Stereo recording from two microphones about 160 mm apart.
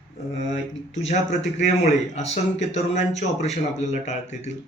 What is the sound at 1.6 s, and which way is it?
Speech, 45° left (ahead or behind).